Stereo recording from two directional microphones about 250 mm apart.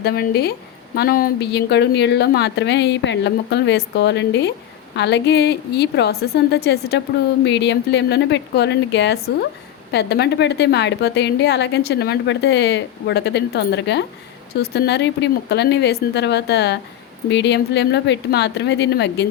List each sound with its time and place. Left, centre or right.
0.0 s a woman's voice: left